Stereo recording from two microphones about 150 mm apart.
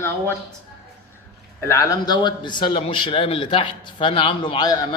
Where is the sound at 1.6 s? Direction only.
20° left (ahead or behind).